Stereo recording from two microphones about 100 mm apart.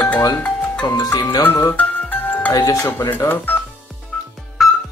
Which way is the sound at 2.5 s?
40° left (ahead or behind).